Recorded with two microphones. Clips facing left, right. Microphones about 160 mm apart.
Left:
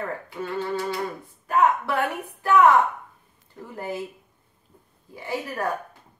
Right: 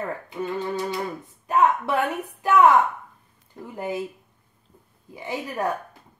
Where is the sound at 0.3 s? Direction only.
20° right (ahead or behind).